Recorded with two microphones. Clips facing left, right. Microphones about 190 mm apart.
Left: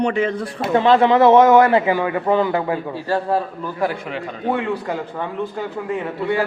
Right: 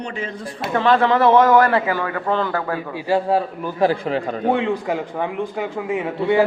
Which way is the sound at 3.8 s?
30° right (ahead or behind).